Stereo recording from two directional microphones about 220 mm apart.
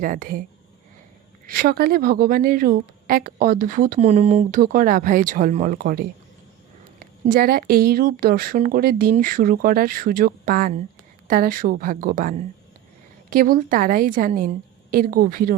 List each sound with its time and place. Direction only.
0.0 s speech: 40° right (ahead or behind)
1.5 s speech: 40° right (ahead or behind)